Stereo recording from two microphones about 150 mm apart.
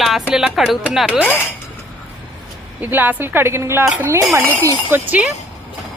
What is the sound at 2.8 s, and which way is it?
Speech, 15° right (ahead or behind).